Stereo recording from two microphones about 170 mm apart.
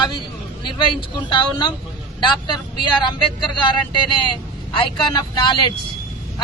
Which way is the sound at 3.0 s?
25° left (ahead or behind).